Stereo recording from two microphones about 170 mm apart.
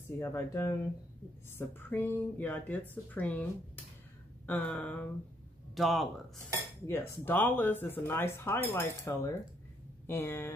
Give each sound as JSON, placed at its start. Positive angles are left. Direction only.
{"t": 0.2, "sound": "speech", "side_deg": 15}
{"t": 6.9, "sound": "speech", "side_deg": 10}